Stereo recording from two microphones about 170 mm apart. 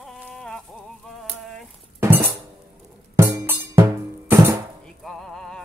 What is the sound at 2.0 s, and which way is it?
Music, 15° right (ahead or behind).